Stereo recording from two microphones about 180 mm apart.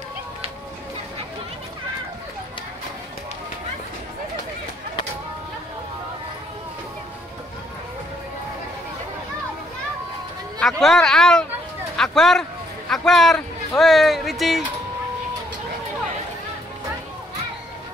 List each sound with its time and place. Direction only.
10.6 s speech: centre (ahead or behind)
12.0 s a sound: centre (ahead or behind)
12.9 s a man's voice: centre (ahead or behind)